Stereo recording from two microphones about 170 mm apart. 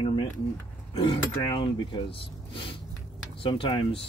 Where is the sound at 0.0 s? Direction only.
30° left (ahead or behind).